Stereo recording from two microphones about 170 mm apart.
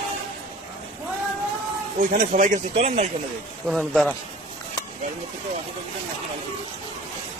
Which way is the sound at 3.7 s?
Centre (ahead or behind).